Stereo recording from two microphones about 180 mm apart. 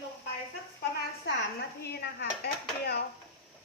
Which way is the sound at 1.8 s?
65° left (ahead or behind).